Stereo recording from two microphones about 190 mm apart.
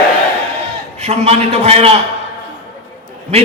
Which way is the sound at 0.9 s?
35° right (ahead or behind).